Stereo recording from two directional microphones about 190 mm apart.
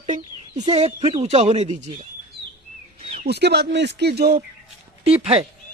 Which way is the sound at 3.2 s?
60° right (ahead or behind).